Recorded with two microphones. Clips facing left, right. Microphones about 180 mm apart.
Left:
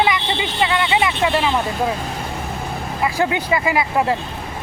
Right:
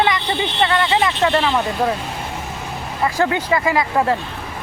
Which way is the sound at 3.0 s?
15° left (ahead or behind).